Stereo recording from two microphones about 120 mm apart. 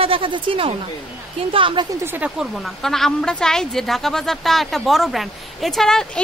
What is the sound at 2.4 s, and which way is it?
A woman's voice, centre (ahead or behind).